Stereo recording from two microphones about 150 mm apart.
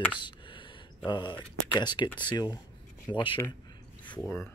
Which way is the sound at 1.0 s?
30° left (ahead or behind).